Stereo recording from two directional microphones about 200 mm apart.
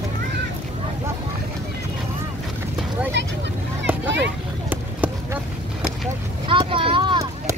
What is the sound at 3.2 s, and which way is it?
Vehicle, 60° right (ahead or behind).